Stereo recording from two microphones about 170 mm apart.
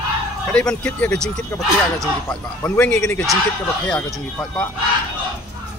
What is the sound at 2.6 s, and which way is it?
Speech, 5° left (ahead or behind).